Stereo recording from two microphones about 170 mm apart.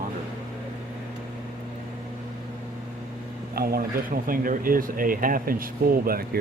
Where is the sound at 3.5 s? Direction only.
65° right (ahead or behind).